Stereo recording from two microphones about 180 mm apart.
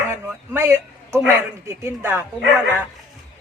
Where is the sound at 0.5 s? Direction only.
10° right (ahead or behind).